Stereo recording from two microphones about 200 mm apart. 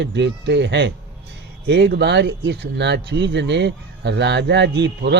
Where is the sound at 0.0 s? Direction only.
60° right (ahead or behind).